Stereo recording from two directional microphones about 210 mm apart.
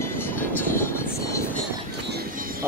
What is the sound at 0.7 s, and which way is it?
Vehicle, 15° left (ahead or behind).